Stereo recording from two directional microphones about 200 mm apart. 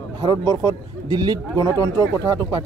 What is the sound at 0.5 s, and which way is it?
Speech, 20° right (ahead or behind).